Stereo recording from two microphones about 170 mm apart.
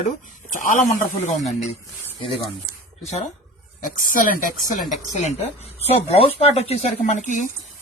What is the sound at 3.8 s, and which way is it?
Speech, 50° left (ahead or behind).